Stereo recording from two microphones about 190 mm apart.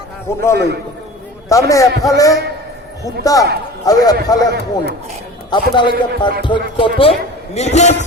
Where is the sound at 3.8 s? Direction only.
20° left (ahead or behind).